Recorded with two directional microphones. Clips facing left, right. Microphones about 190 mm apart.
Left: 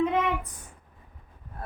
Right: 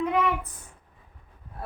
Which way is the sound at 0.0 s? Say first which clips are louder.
Even; 20° left (ahead or behind).